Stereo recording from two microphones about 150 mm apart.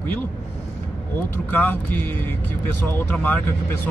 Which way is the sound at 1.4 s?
10° left (ahead or behind).